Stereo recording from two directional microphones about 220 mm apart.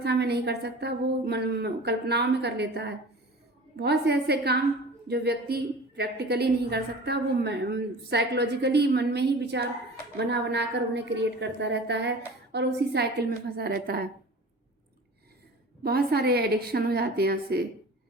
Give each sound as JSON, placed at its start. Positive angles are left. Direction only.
{"t": 0.0, "sound": "a woman's voice", "side_deg": -50}
{"t": 15.8, "sound": "a woman's voice", "side_deg": -45}